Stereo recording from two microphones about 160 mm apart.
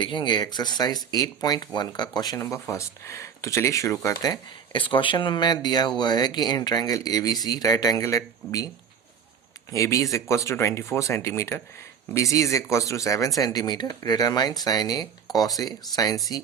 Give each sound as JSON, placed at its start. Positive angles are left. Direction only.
{"t": 0.0, "sound": "speech", "side_deg": 30}
{"t": 9.7, "sound": "speech", "side_deg": 20}